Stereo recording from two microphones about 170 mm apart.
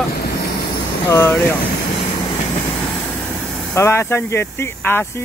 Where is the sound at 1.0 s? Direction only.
15° left (ahead or behind).